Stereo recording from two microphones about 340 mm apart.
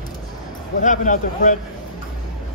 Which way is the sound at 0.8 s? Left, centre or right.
Left.